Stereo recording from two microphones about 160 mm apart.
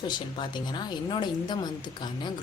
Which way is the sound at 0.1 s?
30° left (ahead or behind).